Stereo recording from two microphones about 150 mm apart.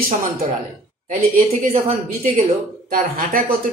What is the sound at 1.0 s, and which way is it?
Speech, 60° right (ahead or behind).